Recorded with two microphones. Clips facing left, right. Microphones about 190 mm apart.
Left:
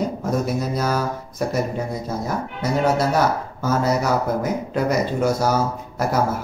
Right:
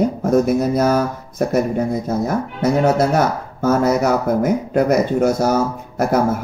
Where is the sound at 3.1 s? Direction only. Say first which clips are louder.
Right 2 dB; 55° right (ahead or behind).